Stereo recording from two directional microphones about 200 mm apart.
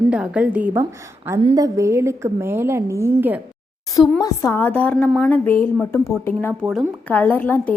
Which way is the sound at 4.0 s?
15° left (ahead or behind).